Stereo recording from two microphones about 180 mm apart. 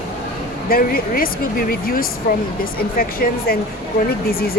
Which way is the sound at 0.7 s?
55° left (ahead or behind).